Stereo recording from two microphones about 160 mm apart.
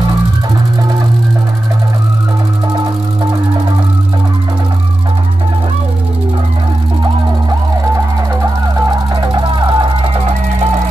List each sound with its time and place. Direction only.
9.1 s music: 25° right (ahead or behind)